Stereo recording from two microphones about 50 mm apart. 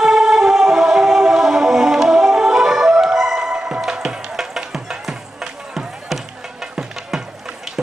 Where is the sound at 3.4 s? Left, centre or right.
Centre.